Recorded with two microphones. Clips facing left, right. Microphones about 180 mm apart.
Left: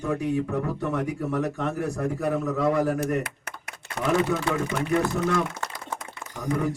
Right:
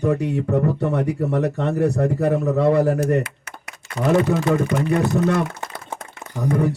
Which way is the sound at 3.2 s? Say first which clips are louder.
Right 3 dB; 55° left (ahead or behind).